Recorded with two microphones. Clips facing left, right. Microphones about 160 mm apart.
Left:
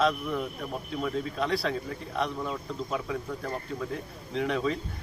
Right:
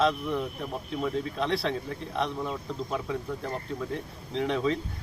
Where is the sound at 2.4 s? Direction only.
5° right (ahead or behind).